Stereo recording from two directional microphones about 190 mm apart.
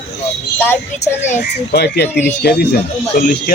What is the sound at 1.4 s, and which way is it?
Speech, 60° left (ahead or behind).